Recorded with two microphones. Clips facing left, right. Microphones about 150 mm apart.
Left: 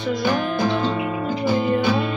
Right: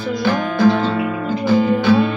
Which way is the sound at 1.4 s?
15° left (ahead or behind).